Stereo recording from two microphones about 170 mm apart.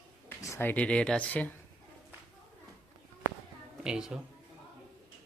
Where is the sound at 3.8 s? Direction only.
5° right (ahead or behind).